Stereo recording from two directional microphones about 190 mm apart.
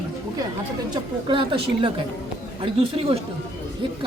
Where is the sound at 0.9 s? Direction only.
25° right (ahead or behind).